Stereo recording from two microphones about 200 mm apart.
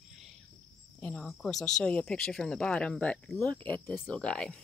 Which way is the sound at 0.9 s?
5° left (ahead or behind).